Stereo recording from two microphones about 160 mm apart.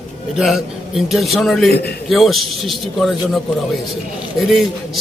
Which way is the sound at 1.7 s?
80° left.